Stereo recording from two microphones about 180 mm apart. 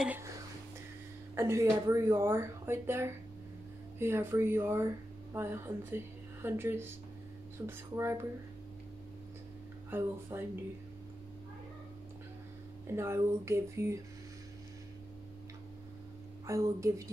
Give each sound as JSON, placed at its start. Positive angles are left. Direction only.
{"t": 0.0, "sound": "whispering", "side_deg": -10}
{"t": 1.3, "sound": "speech", "side_deg": -15}
{"t": 9.8, "sound": "speech", "side_deg": -10}
{"t": 12.9, "sound": "speech", "side_deg": -15}
{"t": 16.4, "sound": "speech", "side_deg": -15}